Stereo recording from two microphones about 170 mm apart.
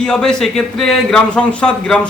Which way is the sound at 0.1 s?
5° left (ahead or behind).